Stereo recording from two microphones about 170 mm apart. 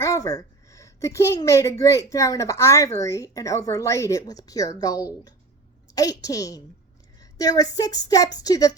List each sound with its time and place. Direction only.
0.0 s a woman's voice: 20° left (ahead or behind)